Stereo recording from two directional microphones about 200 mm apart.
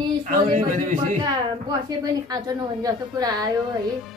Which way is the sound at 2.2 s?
20° right (ahead or behind).